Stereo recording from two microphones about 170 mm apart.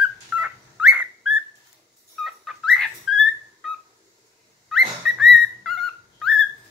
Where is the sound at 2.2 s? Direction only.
Centre (ahead or behind).